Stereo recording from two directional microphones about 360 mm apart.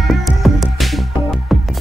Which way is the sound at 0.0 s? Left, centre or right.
Centre.